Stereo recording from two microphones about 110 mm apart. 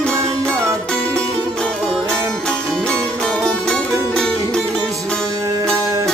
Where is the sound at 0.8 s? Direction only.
10° left (ahead or behind).